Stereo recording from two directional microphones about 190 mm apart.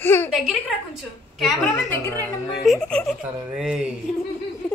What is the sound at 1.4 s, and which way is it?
Speech, centre (ahead or behind).